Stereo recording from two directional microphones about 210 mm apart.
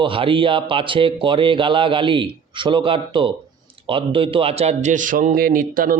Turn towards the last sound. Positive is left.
turn(degrees=-40)  # may be behind; listen again after turning